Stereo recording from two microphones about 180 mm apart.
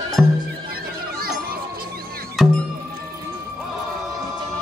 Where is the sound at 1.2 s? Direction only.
55° right (ahead or behind).